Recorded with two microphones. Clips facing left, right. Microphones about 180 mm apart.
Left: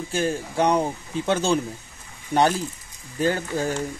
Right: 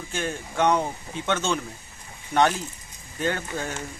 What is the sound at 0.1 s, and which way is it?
Speech, 35° left (ahead or behind).